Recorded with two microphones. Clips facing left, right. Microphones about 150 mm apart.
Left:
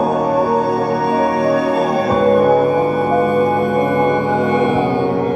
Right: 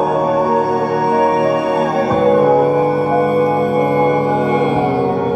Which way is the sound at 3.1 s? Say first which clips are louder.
Right 1 dB; 35° right (ahead or behind).